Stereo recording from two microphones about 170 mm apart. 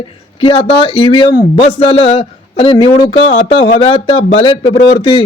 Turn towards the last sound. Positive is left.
turn(degrees=30)  # may be behind; listen again after turning